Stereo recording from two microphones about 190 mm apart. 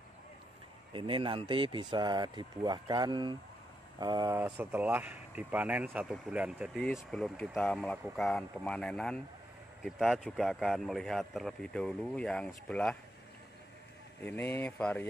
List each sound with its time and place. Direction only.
0.9 s speech: 25° right (ahead or behind); by 12.9 s 5° left (ahead or behind)
14.2 s speech: 10° left (ahead or behind)